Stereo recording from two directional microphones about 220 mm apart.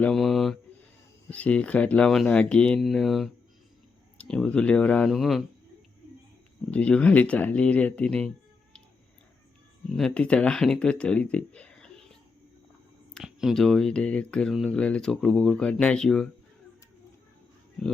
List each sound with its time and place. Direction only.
0.0 s a sound: centre (ahead or behind)
1.3 s speech: 5° left (ahead or behind)
6.7 s speech: 5° left (ahead or behind)
9.9 s speech: 5° left (ahead or behind)
13.1 s speech: centre (ahead or behind)